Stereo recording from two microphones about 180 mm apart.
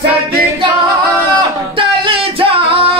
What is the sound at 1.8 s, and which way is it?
Music, 30° right (ahead or behind).